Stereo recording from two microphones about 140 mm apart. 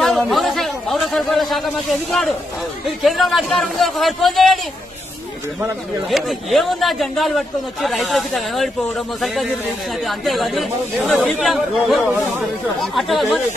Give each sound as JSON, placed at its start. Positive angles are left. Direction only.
{"t": 0.0, "sound": "a sound", "side_deg": 0}
{"t": 3.0, "sound": "speech", "side_deg": 0}
{"t": 6.0, "sound": "speech", "side_deg": 0}